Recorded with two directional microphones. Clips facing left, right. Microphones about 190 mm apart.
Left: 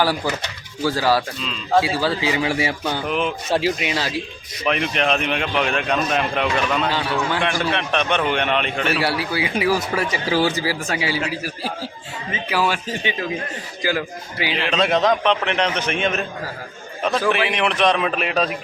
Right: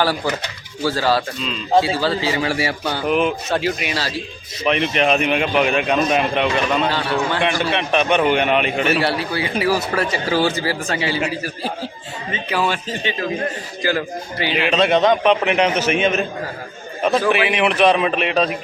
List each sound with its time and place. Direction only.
0.9 s a man's voice: 10° left (ahead or behind)
2.8 s a man's voice: 5° right (ahead or behind)
3.5 s speech: 25° left (ahead or behind)
4.6 s a man's voice: centre (ahead or behind)
9.0 s a man's voice: 10° left (ahead or behind)
12.3 s a man's voice: 5° left (ahead or behind)
14.5 s a man's voice: 5° right (ahead or behind)